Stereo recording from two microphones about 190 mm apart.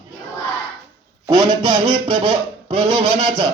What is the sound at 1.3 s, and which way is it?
Speech, 20° right (ahead or behind).